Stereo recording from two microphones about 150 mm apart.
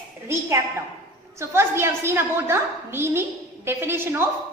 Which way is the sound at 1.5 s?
15° right (ahead or behind).